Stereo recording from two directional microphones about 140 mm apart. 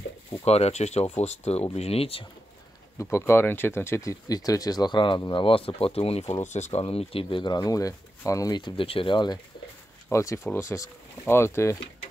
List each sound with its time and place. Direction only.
0.5 s speech: 50° left (ahead or behind)
3.0 s speech: 20° left (ahead or behind)
10.0 s speech: 20° left (ahead or behind)